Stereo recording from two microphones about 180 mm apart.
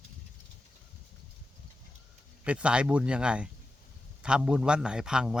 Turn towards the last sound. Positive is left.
turn(degrees=-5)  # may be behind; listen again after turning